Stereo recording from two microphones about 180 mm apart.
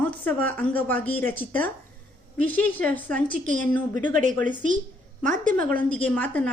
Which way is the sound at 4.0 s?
45° right (ahead or behind).